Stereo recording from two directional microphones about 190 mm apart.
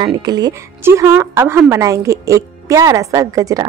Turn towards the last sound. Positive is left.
turn(degrees=-20)  # may be behind; listen again after turning